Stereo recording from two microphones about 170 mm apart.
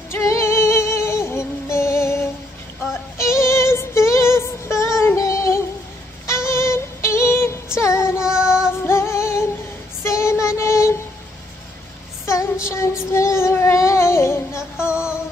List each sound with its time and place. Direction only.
0.1 s music: 15° left (ahead or behind)
8.2 s child singing: 5° right (ahead or behind)
8.8 s music: 15° left (ahead or behind)
10.0 s child singing: 15° left (ahead or behind)
12.3 s child singing: 15° left (ahead or behind)
14.9 s music: 5° right (ahead or behind)